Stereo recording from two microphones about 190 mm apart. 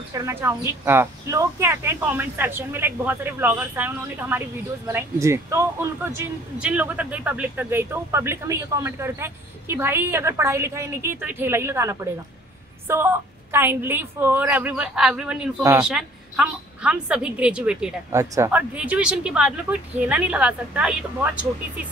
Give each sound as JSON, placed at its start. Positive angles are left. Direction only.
{"t": 0.1, "sound": "a woman's voice", "side_deg": -15}